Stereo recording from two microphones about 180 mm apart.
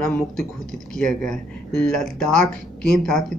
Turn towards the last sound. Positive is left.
turn(degrees=0)  # may be behind; listen again after turning